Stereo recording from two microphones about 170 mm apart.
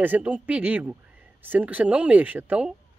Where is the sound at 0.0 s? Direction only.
10° right (ahead or behind).